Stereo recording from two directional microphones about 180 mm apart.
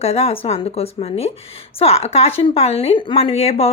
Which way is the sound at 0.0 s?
35° left (ahead or behind).